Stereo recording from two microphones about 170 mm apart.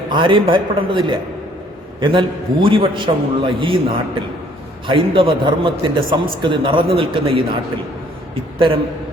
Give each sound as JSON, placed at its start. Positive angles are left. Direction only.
{"t": 0.1, "sound": "a man's voice", "side_deg": -30}
{"t": 8.5, "sound": "a man's voice", "side_deg": -30}